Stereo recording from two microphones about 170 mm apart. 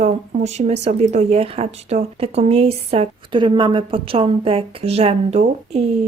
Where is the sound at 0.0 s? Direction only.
40° right (ahead or behind).